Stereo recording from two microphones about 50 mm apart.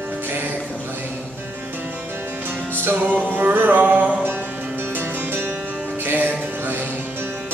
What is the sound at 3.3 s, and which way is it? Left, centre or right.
Music, right.